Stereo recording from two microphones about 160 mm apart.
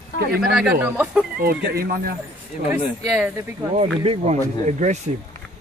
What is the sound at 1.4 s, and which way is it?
Speech, 75° right (ahead or behind).